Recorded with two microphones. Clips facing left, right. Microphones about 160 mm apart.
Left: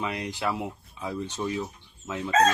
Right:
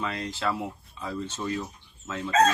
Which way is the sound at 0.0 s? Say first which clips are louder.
Even; 15° left (ahead or behind).